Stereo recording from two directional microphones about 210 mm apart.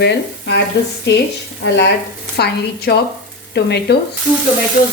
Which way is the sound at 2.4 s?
50° left (ahead or behind).